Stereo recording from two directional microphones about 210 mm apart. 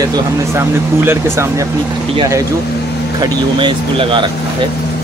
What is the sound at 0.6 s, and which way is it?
Speech, 10° right (ahead or behind).